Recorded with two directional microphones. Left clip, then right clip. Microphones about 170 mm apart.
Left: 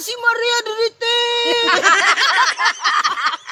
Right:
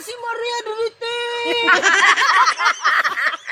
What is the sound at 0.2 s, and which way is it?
Speech, 25° left (ahead or behind).